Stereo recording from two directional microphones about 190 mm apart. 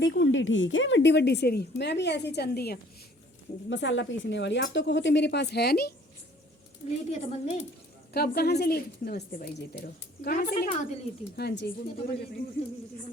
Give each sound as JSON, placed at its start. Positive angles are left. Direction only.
{"t": 0.0, "sound": "a woman's voice", "side_deg": 70}
{"t": 3.7, "sound": "speech", "side_deg": 75}
{"t": 6.8, "sound": "a woman's voice", "side_deg": 35}
{"t": 8.1, "sound": "a woman's voice", "side_deg": 55}
{"t": 11.3, "sound": "a woman's voice", "side_deg": 60}